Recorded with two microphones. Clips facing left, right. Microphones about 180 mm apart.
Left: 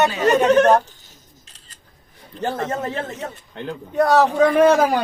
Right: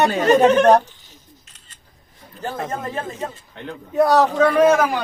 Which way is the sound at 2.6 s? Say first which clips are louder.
Left 2 dB; 75° left (ahead or behind).